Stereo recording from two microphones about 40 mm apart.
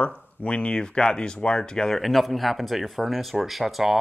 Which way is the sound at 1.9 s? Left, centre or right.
Centre.